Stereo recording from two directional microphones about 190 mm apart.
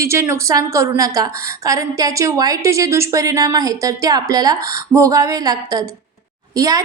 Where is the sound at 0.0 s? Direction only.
15° right (ahead or behind).